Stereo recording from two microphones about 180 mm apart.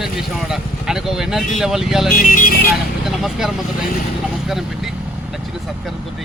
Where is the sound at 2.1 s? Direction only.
45° left (ahead or behind).